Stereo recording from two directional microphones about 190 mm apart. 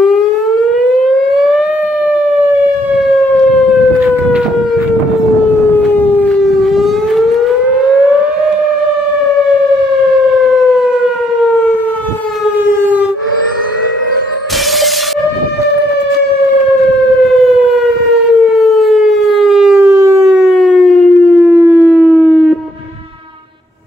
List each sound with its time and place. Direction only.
5.8 s civil defense siren: 5° left (ahead or behind)
10.4 s civil defense siren: centre (ahead or behind)
18.4 s civil defense siren: centre (ahead or behind)